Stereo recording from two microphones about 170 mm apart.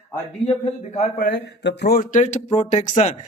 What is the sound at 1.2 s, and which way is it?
Speech, 80° left.